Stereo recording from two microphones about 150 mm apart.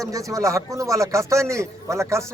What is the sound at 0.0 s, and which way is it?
A man's voice, 20° right (ahead or behind).